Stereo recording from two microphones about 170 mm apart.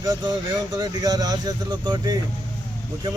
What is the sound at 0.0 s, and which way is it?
Speech, 20° right (ahead or behind).